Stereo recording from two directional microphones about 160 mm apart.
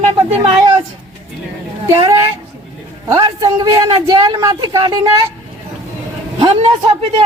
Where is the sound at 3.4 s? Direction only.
20° right (ahead or behind).